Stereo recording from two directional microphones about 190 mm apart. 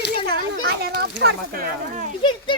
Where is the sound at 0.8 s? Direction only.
55° right (ahead or behind).